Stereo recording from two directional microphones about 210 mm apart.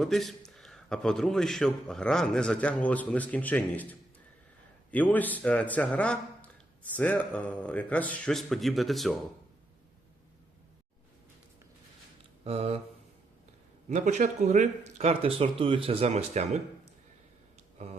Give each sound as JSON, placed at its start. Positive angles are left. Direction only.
{"t": 0.0, "sound": "speech", "side_deg": 0}
{"t": 12.5, "sound": "speech", "side_deg": -30}
{"t": 13.9, "sound": "speech", "side_deg": -35}
{"t": 17.8, "sound": "a sound", "side_deg": -30}